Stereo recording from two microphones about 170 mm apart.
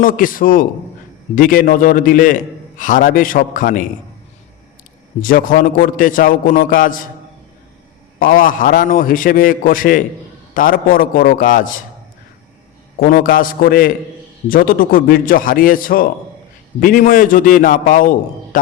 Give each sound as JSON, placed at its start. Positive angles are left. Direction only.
{"t": 0.0, "sound": "a man's voice", "side_deg": 55}
{"t": 5.2, "sound": "a man's voice", "side_deg": 55}
{"t": 8.2, "sound": "a man's voice", "side_deg": 55}
{"t": 13.0, "sound": "a man's voice", "side_deg": 55}